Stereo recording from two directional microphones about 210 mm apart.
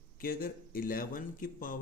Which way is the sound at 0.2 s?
45° left (ahead or behind).